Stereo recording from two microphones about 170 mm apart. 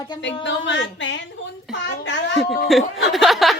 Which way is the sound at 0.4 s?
90° left.